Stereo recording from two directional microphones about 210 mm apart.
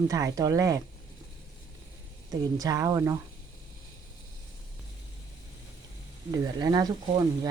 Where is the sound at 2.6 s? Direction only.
15° right (ahead or behind).